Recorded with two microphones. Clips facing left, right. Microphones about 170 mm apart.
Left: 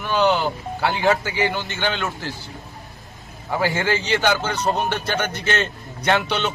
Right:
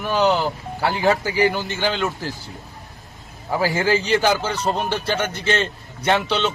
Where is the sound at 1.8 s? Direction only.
Centre (ahead or behind).